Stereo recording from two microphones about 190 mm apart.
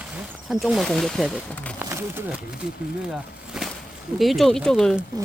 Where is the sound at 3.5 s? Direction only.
Centre (ahead or behind).